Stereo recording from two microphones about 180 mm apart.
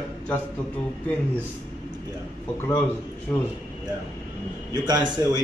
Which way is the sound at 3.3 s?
15° left (ahead or behind).